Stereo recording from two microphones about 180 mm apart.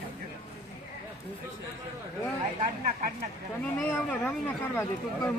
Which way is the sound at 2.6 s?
45° right (ahead or behind).